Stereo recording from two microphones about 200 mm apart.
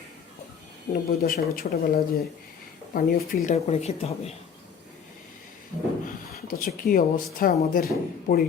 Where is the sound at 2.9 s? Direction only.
45° left (ahead or behind).